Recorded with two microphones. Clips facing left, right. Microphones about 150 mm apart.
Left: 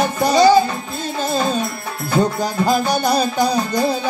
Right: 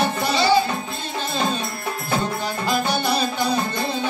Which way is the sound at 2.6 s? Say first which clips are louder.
Left 4 dB; 40° left (ahead or behind).